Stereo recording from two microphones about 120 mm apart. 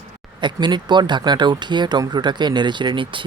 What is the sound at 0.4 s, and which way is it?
Speech, 40° right (ahead or behind).